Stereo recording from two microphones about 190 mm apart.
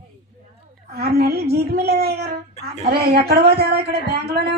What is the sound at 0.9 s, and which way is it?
A child's voice, 55° right (ahead or behind).